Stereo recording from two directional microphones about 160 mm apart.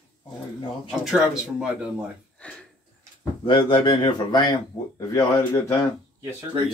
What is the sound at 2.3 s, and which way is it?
Speech, 10° left (ahead or behind).